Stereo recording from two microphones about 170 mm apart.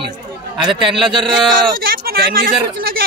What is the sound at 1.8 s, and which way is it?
Speech, 60° right (ahead or behind).